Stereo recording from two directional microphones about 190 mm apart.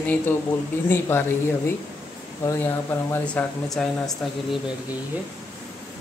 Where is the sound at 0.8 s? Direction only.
15° left (ahead or behind).